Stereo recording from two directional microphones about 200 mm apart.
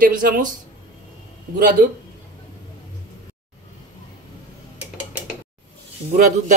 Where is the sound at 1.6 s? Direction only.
40° right (ahead or behind).